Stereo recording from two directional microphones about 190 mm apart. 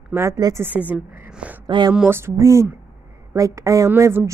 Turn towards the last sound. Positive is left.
turn(degrees=-10)  # may be behind; listen again after turning